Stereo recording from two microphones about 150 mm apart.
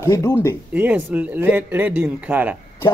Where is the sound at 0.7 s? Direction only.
10° right (ahead or behind).